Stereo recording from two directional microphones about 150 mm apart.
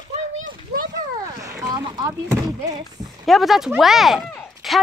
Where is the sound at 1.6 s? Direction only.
25° right (ahead or behind).